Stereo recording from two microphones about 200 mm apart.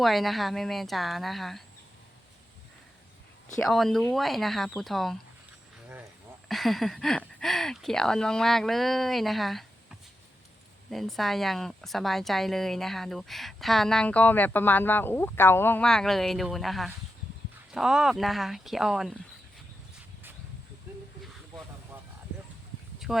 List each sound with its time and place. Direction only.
0.0 s a woman's voice: centre (ahead or behind)
3.6 s a woman's voice: centre (ahead or behind)
6.5 s a woman's voice: centre (ahead or behind)
10.9 s a woman's voice: centre (ahead or behind)
23.1 s a sound: 5° right (ahead or behind)